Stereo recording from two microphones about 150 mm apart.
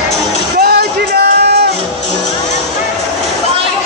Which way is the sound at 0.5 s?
90° right.